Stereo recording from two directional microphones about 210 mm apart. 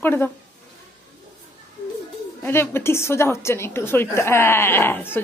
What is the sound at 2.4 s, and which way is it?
A woman's voice, 10° left (ahead or behind).